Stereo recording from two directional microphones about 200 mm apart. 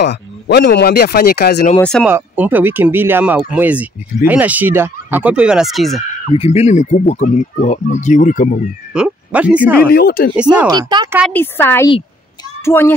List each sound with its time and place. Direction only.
0.0 s speech: 60° left (ahead or behind)
1.8 s speech: 5° left (ahead or behind)
2.0 s speech: 10° right (ahead or behind)
6.3 s speech: 30° left (ahead or behind)
8.9 s speech: 5° right (ahead or behind)
9.8 s speech: 50° left (ahead or behind)
10.3 s speech: 5° right (ahead or behind)
10.7 s speech: 20° right (ahead or behind)
11.3 s speech: 10° left (ahead or behind)